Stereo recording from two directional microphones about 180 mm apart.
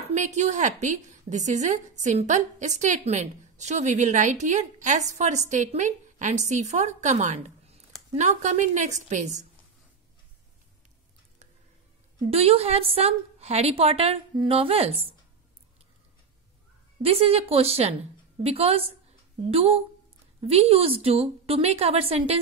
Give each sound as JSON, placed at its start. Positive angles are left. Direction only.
{"t": 0.1, "sound": "a woman's voice", "side_deg": -40}
{"t": 12.3, "sound": "a woman's voice", "side_deg": -35}
{"t": 17.0, "sound": "a woman's voice", "side_deg": -30}